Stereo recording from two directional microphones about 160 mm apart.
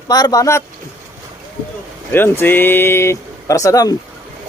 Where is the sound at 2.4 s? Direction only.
15° left (ahead or behind).